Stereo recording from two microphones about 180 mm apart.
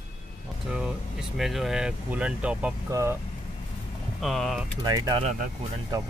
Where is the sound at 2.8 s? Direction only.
15° right (ahead or behind).